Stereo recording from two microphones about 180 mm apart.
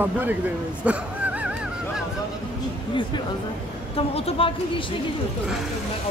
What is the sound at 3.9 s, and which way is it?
Speech, 30° left (ahead or behind).